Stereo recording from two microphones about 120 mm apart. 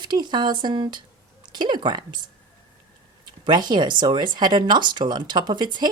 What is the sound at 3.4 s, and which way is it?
Speech, 40° right (ahead or behind).